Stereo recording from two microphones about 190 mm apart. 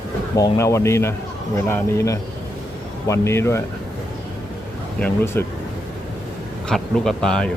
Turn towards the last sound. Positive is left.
turn(degrees=5)  # may be behind; listen again after turning